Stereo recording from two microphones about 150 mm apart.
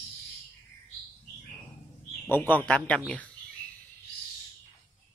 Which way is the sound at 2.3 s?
10° left (ahead or behind).